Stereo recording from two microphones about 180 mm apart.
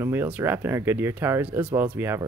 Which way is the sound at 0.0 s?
15° right (ahead or behind).